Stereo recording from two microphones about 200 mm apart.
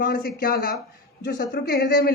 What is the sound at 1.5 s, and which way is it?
Speech, 60° left (ahead or behind).